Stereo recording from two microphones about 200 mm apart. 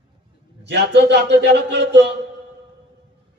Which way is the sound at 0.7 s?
55° right (ahead or behind).